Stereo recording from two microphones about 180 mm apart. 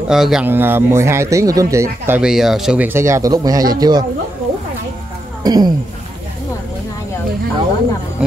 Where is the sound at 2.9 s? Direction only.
15° right (ahead or behind).